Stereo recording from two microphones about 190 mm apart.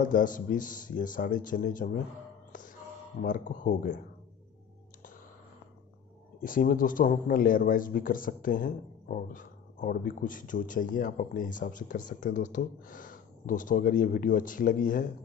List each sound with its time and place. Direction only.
0.0 s a man's voice: 45° left (ahead or behind)
2.5 s a sound: 45° left (ahead or behind)
6.4 s a man's voice: 45° left (ahead or behind)